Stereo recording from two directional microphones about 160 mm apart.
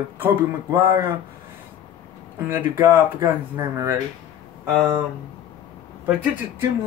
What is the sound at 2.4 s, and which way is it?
Speech, 15° right (ahead or behind).